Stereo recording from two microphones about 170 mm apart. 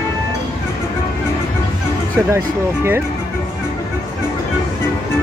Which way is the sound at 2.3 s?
15° right (ahead or behind).